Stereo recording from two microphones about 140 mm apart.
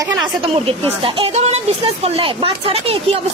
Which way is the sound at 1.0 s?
40° right (ahead or behind).